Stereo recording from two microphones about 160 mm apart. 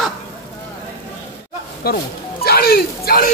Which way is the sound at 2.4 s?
70° left (ahead or behind).